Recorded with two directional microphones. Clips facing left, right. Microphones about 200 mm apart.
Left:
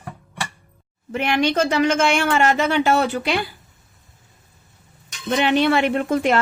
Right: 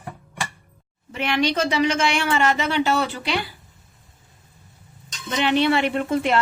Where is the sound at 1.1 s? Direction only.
50° left (ahead or behind).